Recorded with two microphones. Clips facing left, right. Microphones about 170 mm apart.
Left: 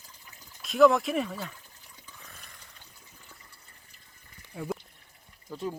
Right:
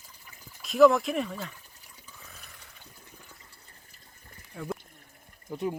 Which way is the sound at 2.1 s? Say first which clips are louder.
Right 1 dB; centre (ahead or behind).